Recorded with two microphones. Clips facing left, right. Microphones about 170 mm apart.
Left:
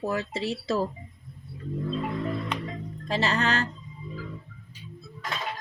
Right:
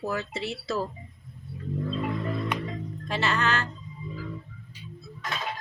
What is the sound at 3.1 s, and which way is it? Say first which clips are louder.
Speech: left 1 dB; 35° left (ahead or behind).